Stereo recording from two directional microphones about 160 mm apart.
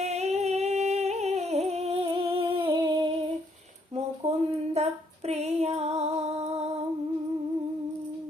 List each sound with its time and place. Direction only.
0.0 s humming: 45° right (ahead or behind)
4.2 s a sound: 45° right (ahead or behind)
4.7 s female singing: 40° right (ahead or behind)